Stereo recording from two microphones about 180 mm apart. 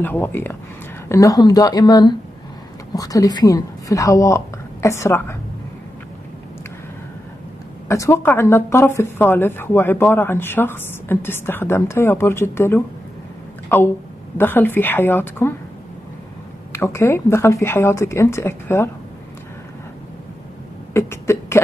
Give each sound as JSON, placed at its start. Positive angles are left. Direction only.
{"t": 0.0, "sound": "speech", "side_deg": 10}
{"t": 7.9, "sound": "a woman's voice", "side_deg": 15}
{"t": 16.7, "sound": "speech", "side_deg": 15}
{"t": 20.9, "sound": "cough", "side_deg": 15}